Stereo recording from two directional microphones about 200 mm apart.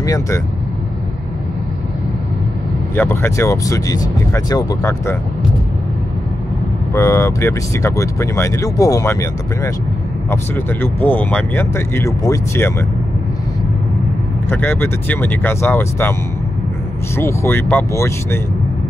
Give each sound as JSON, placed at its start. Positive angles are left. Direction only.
{"t": 0.0, "sound": "speech", "side_deg": 15}
{"t": 3.0, "sound": "speech", "side_deg": 10}
{"t": 6.9, "sound": "speech", "side_deg": 15}
{"t": 14.5, "sound": "speech", "side_deg": 10}
{"t": 17.2, "sound": "speech", "side_deg": 10}